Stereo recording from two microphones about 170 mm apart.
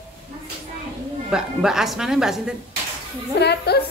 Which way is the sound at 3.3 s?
75° left (ahead or behind).